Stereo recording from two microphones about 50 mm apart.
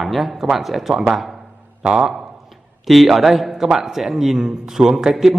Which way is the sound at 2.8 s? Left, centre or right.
Centre.